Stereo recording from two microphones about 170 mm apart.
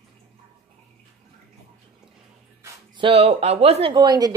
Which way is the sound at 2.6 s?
30° right (ahead or behind).